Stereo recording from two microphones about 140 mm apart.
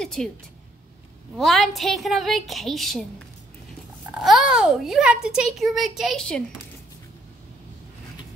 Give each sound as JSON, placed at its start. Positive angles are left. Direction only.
{"t": 0.0, "sound": "a woman's voice", "side_deg": 5}
{"t": 1.4, "sound": "a child's voice", "side_deg": 0}
{"t": 4.1, "sound": "a child's voice", "side_deg": 0}